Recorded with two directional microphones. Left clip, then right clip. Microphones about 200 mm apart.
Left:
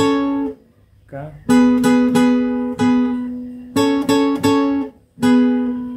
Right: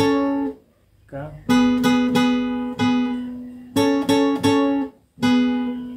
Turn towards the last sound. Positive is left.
turn(degrees=30)  # may be behind; listen again after turning